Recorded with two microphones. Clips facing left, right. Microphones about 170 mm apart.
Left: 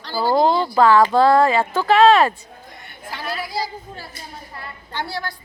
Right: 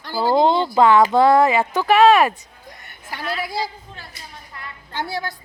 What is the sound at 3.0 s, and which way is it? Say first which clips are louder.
Speech: right 1 dB; 50° right (ahead or behind).